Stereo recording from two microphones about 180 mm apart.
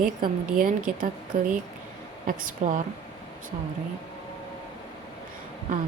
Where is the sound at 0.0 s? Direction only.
50° right (ahead or behind).